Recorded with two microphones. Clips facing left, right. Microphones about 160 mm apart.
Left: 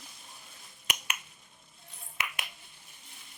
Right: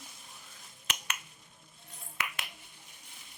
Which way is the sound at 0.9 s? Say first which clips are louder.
Left 2 dB; 15° left (ahead or behind).